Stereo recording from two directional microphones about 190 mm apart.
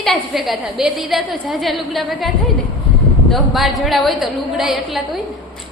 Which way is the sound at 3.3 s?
Centre (ahead or behind).